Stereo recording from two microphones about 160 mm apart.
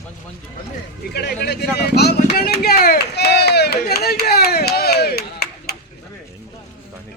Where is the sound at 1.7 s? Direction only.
90° left.